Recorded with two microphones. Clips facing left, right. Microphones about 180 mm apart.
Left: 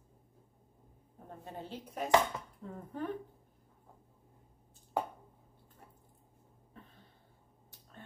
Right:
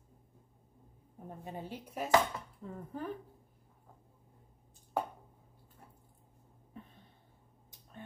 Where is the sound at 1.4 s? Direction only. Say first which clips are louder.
Right 1 dB; 10° right (ahead or behind).